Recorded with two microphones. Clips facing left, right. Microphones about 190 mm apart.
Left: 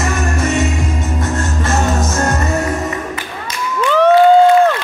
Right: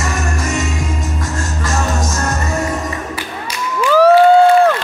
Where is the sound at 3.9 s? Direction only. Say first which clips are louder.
Right 2 dB; 5° right (ahead or behind).